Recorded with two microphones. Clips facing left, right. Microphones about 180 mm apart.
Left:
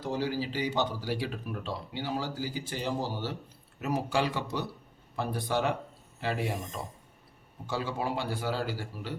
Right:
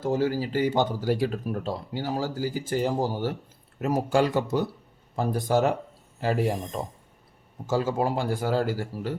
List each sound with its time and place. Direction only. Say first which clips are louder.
0.0 s speech: right 6 dB; 45° right (ahead or behind)